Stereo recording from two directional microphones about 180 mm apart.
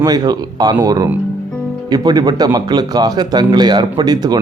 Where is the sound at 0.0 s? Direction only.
20° right (ahead or behind).